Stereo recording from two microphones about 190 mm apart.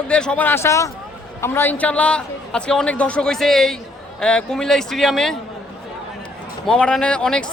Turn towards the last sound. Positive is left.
turn(degrees=5)  # may be behind; listen again after turning